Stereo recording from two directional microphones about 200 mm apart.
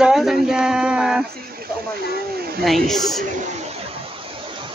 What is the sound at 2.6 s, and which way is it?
Speech, centre (ahead or behind).